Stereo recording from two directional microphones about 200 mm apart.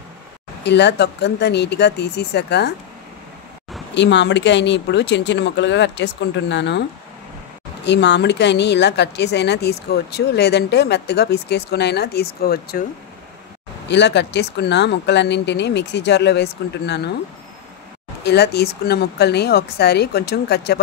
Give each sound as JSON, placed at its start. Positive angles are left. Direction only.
{"t": 0.7, "sound": "speech", "side_deg": 60}
{"t": 3.9, "sound": "speech", "side_deg": 60}
{"t": 7.8, "sound": "speech", "side_deg": 60}
{"t": 13.8, "sound": "speech", "side_deg": 60}
{"t": 18.2, "sound": "speech", "side_deg": 55}